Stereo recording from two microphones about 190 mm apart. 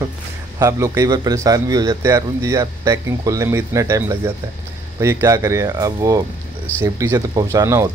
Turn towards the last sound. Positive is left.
turn(degrees=-15)  # may be behind; listen again after turning